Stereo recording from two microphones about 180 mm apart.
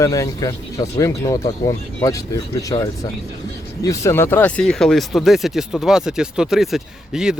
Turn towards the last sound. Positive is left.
turn(degrees=-5)  # may be behind; listen again after turning